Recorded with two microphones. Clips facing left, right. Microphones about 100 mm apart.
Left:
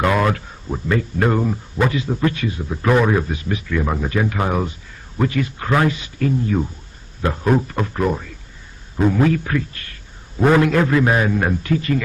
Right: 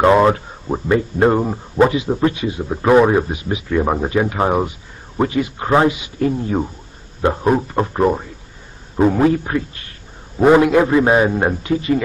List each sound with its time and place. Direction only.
0.0 s a man's voice: 25° right (ahead or behind)
1.9 s a man's voice: 20° right (ahead or behind)
2.6 s a man's voice: 30° right (ahead or behind)
3.6 s speech: 30° right (ahead or behind)
4.1 s a man's voice: 20° right (ahead or behind)
6.1 s a man's voice: 30° right (ahead or behind)